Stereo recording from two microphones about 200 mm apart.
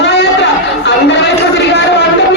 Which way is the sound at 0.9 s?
60° left (ahead or behind).